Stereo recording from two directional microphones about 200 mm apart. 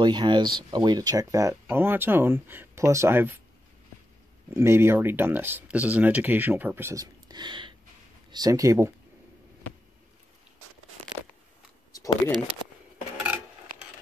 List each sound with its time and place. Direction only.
0.0 s speech: 20° right (ahead or behind)
4.6 s speech: 10° right (ahead or behind)
11.9 s a sound: 20° left (ahead or behind)